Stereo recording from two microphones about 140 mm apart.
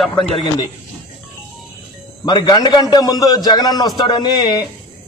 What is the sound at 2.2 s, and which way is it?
A man's voice, 30° left (ahead or behind).